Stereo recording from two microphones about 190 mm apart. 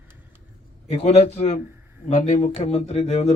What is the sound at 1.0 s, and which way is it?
Speech, 35° left (ahead or behind).